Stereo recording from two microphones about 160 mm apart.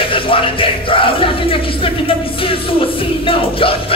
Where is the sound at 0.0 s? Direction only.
35° left (ahead or behind).